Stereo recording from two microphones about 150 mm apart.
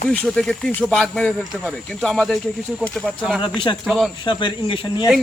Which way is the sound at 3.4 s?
30° left (ahead or behind).